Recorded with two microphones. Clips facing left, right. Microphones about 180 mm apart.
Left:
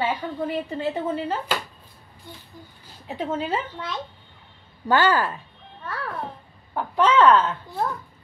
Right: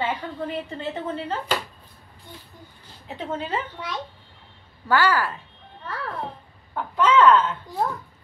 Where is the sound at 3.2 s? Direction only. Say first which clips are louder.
Left 2 dB; 10° left (ahead or behind).